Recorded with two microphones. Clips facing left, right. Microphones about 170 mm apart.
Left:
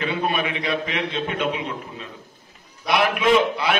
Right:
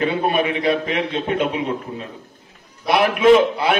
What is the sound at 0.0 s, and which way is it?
A man's voice, 40° right (ahead or behind).